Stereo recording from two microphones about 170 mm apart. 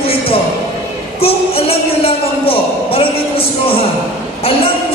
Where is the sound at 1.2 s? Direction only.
35° left (ahead or behind).